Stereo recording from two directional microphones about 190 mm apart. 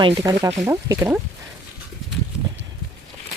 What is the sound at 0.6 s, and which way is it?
Speech, 15° right (ahead or behind).